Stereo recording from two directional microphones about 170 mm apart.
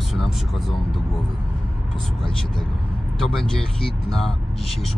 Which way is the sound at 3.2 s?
Centre (ahead or behind).